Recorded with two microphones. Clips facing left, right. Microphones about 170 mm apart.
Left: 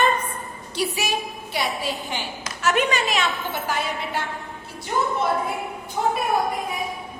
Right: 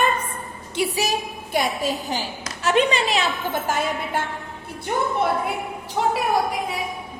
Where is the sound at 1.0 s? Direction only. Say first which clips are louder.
Right 2 dB; 45° right (ahead or behind).